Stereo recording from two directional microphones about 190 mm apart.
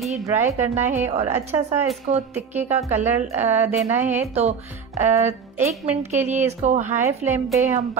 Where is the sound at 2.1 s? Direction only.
35° right (ahead or behind).